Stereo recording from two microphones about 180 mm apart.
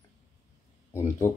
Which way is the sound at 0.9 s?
15° left (ahead or behind).